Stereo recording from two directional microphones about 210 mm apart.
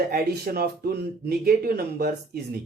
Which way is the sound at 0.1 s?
45° right (ahead or behind).